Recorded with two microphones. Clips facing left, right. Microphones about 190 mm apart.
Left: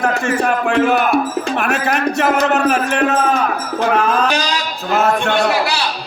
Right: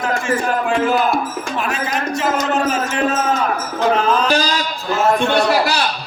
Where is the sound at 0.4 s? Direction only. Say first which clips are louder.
Left 4 dB; 65° left (ahead or behind).